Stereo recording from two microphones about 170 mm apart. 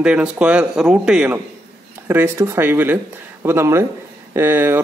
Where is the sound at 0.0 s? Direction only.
5° right (ahead or behind).